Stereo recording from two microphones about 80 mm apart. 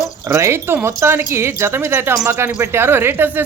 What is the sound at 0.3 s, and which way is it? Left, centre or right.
Speech, right.